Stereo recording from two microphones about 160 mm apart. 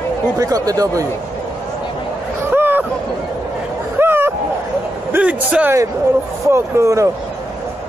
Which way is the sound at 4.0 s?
15° right (ahead or behind).